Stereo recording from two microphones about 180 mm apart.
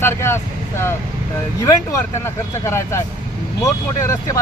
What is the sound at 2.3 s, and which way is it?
Speech, 15° left (ahead or behind).